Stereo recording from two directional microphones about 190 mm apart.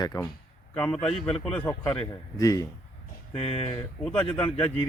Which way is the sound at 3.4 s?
30° left (ahead or behind).